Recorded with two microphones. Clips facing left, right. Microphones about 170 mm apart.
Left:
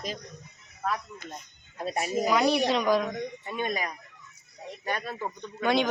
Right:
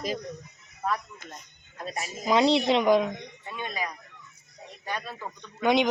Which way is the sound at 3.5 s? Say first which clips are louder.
Left 2 dB; 50° left (ahead or behind).